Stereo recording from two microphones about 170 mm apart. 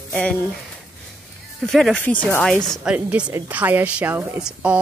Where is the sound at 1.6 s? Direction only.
Centre (ahead or behind).